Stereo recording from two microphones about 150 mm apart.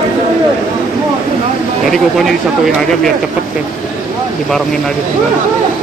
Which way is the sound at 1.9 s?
Centre (ahead or behind).